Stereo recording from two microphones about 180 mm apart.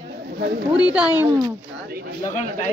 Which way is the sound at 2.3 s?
40° left (ahead or behind).